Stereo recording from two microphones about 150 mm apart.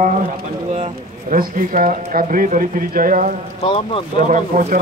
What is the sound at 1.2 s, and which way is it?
Speech, 70° right (ahead or behind).